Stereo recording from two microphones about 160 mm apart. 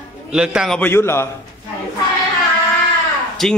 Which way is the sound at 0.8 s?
15° left (ahead or behind).